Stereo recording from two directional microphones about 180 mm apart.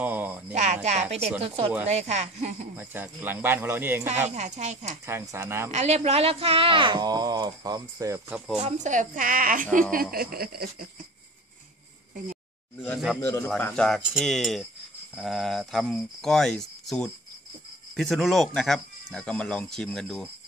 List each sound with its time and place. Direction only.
0.0 s a sound: 10° right (ahead or behind)
0.6 s speech: 40° right (ahead or behind)
2.7 s speech: 10° right (ahead or behind)
4.4 s speech: 40° right (ahead or behind)
5.0 s speech: 15° right (ahead or behind)
5.7 s speech: 40° right (ahead or behind); by 8.4 s 15° right (ahead or behind)
8.6 s a woman's voice: 40° right (ahead or behind)
12.7 s speech: 10° left (ahead or behind)